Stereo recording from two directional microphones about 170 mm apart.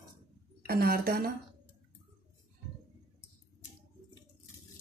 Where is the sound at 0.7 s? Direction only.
60° right (ahead or behind).